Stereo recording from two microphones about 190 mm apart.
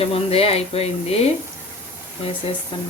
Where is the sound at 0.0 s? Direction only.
30° left (ahead or behind).